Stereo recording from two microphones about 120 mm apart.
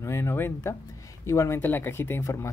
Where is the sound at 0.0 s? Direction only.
25° left (ahead or behind).